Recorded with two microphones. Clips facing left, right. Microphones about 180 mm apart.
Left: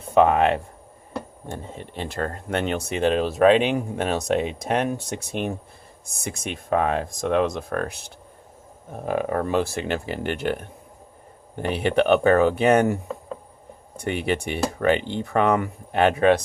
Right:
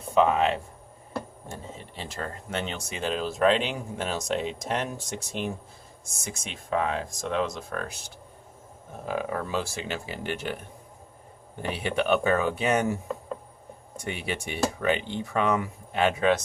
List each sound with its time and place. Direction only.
0.1 s speech: 60° left (ahead or behind)
1.8 s speech: 60° left (ahead or behind)
9.0 s speech: 55° left (ahead or behind)